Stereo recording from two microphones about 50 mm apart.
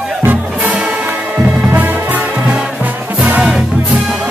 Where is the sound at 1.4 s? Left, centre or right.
Right.